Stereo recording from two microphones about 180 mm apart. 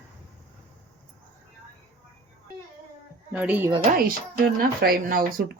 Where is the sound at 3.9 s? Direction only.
60° right (ahead or behind).